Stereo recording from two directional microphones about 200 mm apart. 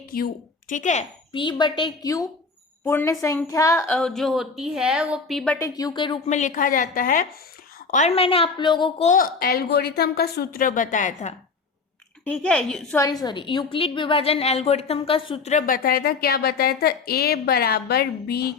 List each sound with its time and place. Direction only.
0.7 s a woman's voice: 40° left (ahead or behind)
1.3 s a woman's voice: 25° left (ahead or behind); by 5.5 s centre (ahead or behind)
5.5 s a woman's voice: 20° left (ahead or behind)
6.2 s a woman's voice: 35° left (ahead or behind)
9.0 s a woman's voice: 45° left (ahead or behind)
12.2 s a woman's voice: 5° left (ahead or behind)
13.0 s a woman's voice: 20° left (ahead or behind); by 18.5 s 50° left (ahead or behind)